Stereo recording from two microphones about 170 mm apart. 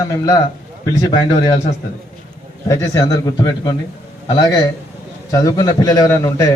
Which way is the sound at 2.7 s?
20° left (ahead or behind).